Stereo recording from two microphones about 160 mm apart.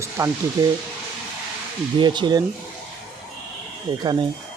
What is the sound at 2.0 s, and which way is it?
Speech, 30° right (ahead or behind).